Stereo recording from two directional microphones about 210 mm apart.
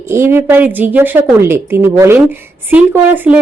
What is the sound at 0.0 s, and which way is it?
A woman's voice, 10° right (ahead or behind).